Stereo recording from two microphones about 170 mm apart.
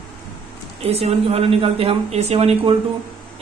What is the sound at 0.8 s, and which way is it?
Speech, 35° right (ahead or behind).